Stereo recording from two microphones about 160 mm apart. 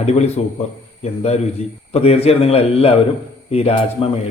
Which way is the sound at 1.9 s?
40° left (ahead or behind).